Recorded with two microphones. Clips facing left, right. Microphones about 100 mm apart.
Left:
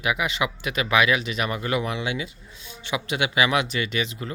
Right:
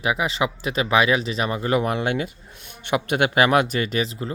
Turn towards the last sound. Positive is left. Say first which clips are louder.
# right 3 dB
turn(degrees=-35)  # may be behind; listen again after turning